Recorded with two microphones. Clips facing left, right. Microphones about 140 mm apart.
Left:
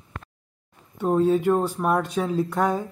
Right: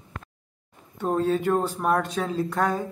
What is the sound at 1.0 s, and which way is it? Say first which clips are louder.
Speech: left 4 dB; 10° left (ahead or behind).